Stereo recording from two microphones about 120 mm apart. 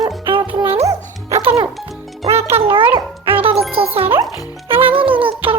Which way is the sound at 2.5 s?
50° right (ahead or behind).